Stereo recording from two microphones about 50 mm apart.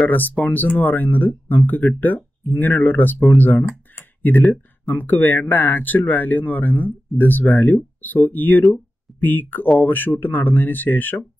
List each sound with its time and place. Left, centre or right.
0.4 s speech: left